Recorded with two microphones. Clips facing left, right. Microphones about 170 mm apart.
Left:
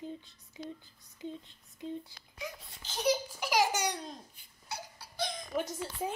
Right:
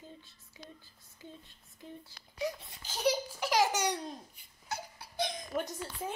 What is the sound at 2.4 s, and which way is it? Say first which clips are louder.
Speech: right 7 dB; 35° right (ahead or behind).